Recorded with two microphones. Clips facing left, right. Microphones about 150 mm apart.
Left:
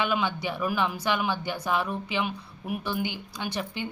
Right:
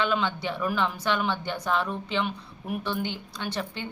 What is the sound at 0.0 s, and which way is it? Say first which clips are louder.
A woman's voice: right 1 dB; 10° left (ahead or behind).